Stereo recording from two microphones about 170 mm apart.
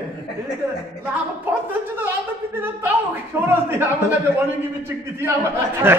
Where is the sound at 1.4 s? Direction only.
10° right (ahead or behind).